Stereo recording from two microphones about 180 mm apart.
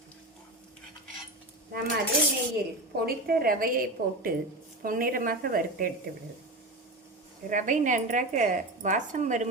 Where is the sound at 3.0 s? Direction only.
55° right (ahead or behind).